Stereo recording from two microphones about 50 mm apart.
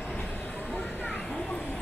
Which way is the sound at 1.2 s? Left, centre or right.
Left.